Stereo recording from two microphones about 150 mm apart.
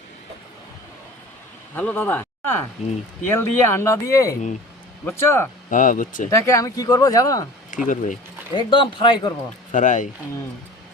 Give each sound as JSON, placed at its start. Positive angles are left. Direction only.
{"t": 1.7, "sound": "speech", "side_deg": 10}
{"t": 5.7, "sound": "speech", "side_deg": 60}
{"t": 6.3, "sound": "speech", "side_deg": 20}
{"t": 7.9, "sound": "speech", "side_deg": 60}
{"t": 8.5, "sound": "speech", "side_deg": 35}
{"t": 9.7, "sound": "speech", "side_deg": 60}